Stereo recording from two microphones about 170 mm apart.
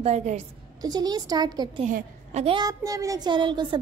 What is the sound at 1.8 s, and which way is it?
Speech, 40° right (ahead or behind).